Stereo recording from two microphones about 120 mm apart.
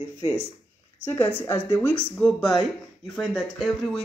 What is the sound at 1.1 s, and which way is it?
Speech, 15° left (ahead or behind).